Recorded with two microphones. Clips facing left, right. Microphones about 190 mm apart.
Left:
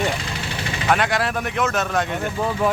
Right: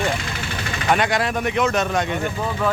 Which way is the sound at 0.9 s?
Centre (ahead or behind).